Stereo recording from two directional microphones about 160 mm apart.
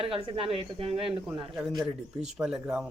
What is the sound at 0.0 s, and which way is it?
Speech, 35° right (ahead or behind).